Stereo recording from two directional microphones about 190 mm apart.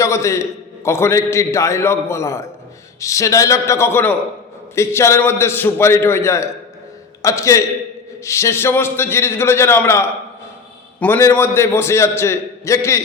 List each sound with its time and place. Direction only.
0.0 s a man's voice: 15° left (ahead or behind)